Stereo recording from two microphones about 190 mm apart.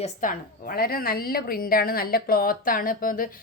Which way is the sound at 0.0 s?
45° left (ahead or behind).